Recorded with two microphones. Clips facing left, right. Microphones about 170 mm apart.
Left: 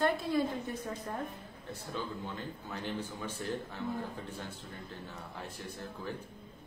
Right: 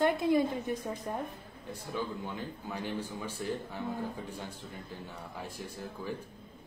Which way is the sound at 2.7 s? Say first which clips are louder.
Right 2 dB; 10° right (ahead or behind).